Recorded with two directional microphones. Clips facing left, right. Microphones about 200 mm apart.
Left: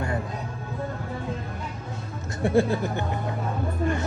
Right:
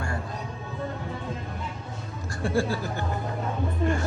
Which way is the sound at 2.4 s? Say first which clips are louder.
Left 5 dB; 20° left (ahead or behind).